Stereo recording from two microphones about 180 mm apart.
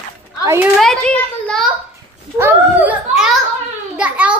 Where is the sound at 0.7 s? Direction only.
5° left (ahead or behind).